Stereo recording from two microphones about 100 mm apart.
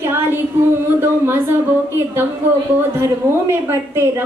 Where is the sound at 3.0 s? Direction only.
25° right (ahead or behind).